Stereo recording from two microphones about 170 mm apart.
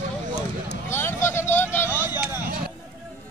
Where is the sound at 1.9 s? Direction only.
10° right (ahead or behind).